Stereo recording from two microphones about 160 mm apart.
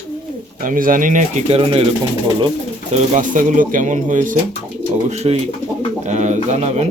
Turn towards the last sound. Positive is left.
turn(degrees=-45)  # may be behind; listen again after turning